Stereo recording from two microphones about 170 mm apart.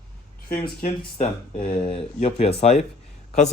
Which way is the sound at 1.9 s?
35° left (ahead or behind).